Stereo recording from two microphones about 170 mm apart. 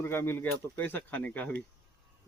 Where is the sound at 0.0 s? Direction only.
15° left (ahead or behind).